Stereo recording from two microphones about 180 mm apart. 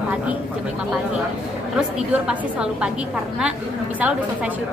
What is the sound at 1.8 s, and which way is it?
A woman's voice, 5° right (ahead or behind).